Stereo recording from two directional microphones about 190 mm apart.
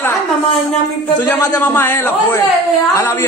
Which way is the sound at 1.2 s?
10° left (ahead or behind).